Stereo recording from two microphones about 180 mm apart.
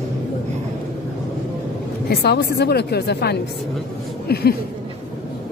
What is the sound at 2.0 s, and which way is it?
A woman's voice, 65° left (ahead or behind).